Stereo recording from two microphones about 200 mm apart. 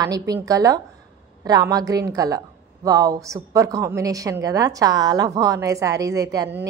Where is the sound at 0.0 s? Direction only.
20° right (ahead or behind).